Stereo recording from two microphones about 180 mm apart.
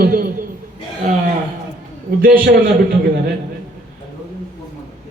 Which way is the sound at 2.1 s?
45° right (ahead or behind).